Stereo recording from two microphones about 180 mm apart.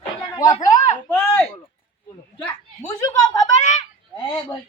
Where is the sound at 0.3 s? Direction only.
20° left (ahead or behind).